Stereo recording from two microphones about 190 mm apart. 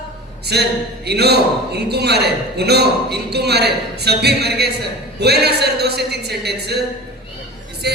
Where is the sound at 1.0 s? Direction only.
60° right (ahead or behind).